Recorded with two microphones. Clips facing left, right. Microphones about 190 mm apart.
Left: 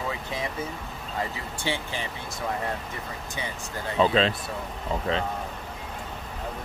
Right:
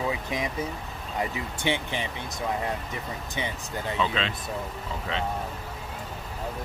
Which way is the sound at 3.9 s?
40° left (ahead or behind).